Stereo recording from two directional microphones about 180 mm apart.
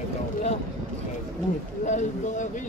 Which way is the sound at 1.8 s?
40° left (ahead or behind).